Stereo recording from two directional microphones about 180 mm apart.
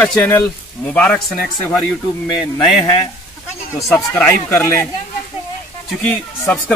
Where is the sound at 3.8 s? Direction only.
10° left (ahead or behind).